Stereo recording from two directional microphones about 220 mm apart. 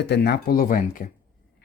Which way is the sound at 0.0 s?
50° left (ahead or behind).